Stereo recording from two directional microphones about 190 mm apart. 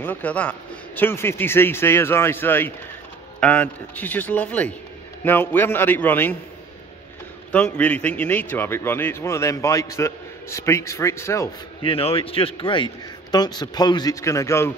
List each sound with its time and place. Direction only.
0.0 s a man's voice: 10° left (ahead or behind)
7.5 s a man's voice: 10° left (ahead or behind)
11.8 s a man's voice: 30° left (ahead or behind); by 14.7 s 15° left (ahead or behind)